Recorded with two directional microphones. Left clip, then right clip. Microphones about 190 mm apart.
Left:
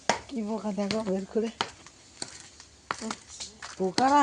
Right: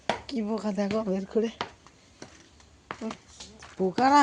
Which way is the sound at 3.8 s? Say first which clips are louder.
Right 2 dB; 25° right (ahead or behind).